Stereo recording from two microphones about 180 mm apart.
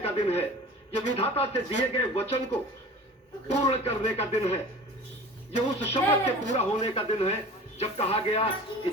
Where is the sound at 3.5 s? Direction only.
35° left (ahead or behind).